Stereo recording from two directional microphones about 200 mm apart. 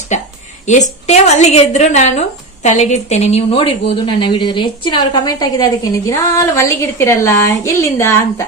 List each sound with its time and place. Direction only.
0.7 s a woman's voice: 35° left (ahead or behind); by 8.5 s 15° left (ahead or behind)